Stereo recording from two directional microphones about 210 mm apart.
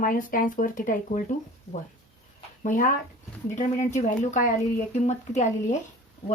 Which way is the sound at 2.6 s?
40° left (ahead or behind).